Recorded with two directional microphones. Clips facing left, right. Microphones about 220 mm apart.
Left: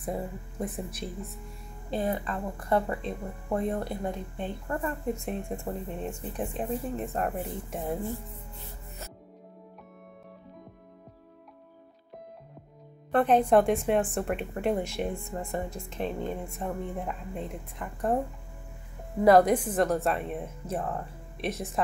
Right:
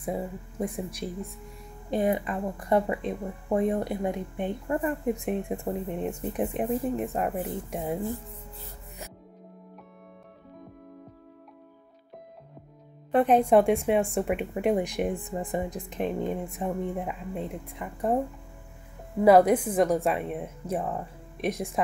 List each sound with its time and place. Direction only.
0.0 s speech: 10° right (ahead or behind)
13.1 s speech: 10° right (ahead or behind)
19.2 s speech: 10° right (ahead or behind)